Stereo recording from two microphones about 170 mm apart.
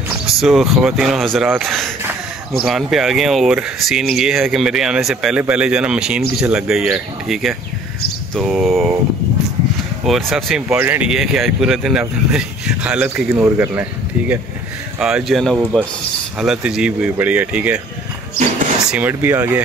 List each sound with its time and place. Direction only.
0.4 s speech: centre (ahead or behind)
10.0 s speech: centre (ahead or behind)
18.9 s speech: 10° right (ahead or behind)